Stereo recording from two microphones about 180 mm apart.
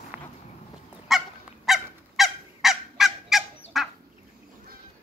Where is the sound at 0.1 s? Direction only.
10° right (ahead or behind).